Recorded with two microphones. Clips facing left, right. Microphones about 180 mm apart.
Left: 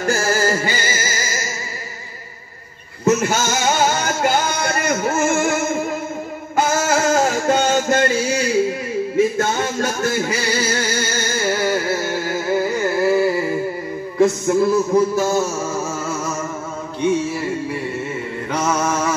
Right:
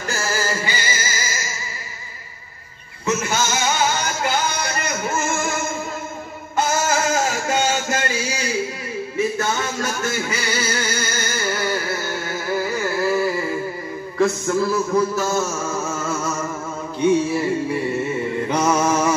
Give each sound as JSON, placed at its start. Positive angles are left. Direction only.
{"t": 0.0, "sound": "music", "side_deg": 45}
{"t": 3.1, "sound": "music", "side_deg": 45}
{"t": 6.6, "sound": "a sound", "side_deg": 55}
{"t": 18.5, "sound": "mantra", "side_deg": -10}